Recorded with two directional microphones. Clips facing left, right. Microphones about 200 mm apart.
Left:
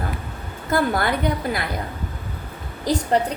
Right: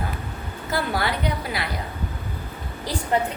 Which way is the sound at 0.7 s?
50° left (ahead or behind).